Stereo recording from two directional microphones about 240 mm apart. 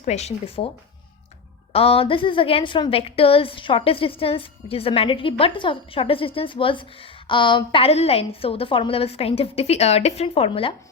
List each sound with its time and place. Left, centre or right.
0.0 s a woman's voice: left
1.7 s a woman's voice: left